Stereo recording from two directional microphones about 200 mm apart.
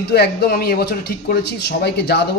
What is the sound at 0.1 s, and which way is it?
Speech, 55° left (ahead or behind).